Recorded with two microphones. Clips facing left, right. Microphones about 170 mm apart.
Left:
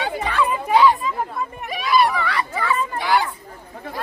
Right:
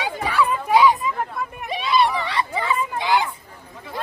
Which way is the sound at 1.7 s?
25° right (ahead or behind).